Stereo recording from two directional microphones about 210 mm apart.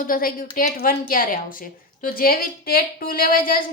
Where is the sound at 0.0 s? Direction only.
45° left (ahead or behind).